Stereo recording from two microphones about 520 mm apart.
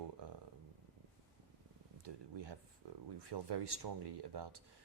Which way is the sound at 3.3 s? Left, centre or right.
Right.